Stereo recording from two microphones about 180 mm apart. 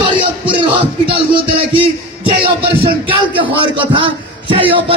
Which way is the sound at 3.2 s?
30° right (ahead or behind).